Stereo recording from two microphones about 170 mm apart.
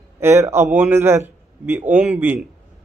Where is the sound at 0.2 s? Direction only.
15° right (ahead or behind).